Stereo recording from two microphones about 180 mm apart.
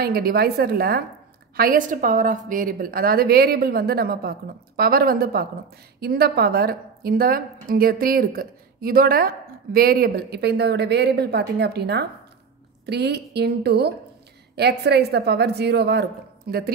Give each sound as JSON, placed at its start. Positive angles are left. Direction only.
{"t": 0.0, "sound": "a woman's voice", "side_deg": -55}